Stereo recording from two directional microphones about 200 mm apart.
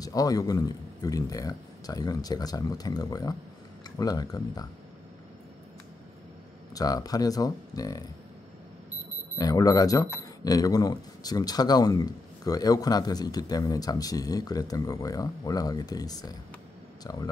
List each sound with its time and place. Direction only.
0.0 s speech: 20° left (ahead or behind)
6.7 s speech: 20° left (ahead or behind)
9.4 s speech: 20° left (ahead or behind)